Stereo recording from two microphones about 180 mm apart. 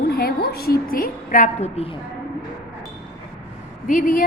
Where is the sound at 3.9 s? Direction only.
45° left (ahead or behind).